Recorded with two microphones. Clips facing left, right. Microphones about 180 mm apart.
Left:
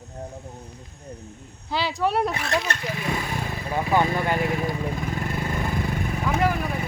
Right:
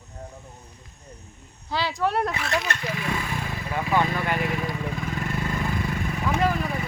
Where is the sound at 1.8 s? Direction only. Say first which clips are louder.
Left 1 dB; 10° left (ahead or behind).